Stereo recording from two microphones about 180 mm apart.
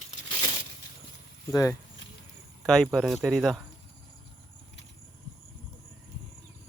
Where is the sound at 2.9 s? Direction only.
Centre (ahead or behind).